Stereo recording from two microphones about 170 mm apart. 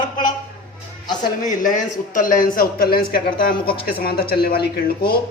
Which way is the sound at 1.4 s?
50° left (ahead or behind).